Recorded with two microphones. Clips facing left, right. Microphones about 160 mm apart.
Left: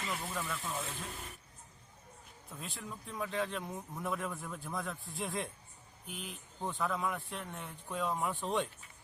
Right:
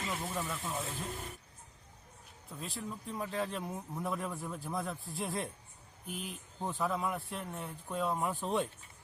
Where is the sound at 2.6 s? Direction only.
Centre (ahead or behind).